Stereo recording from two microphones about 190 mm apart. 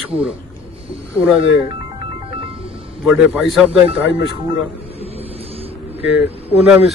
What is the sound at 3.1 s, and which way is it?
Speech, 5° right (ahead or behind).